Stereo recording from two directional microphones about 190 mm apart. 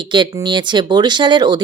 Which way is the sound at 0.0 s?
25° right (ahead or behind).